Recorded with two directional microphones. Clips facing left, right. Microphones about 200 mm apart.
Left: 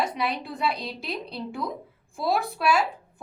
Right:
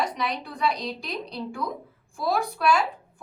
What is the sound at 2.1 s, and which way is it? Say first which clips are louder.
Speech: even; 25° left (ahead or behind).